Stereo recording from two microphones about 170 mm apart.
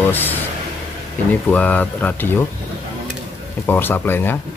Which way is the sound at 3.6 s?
10° left (ahead or behind).